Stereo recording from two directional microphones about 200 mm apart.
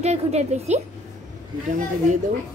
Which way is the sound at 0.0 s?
35° right (ahead or behind).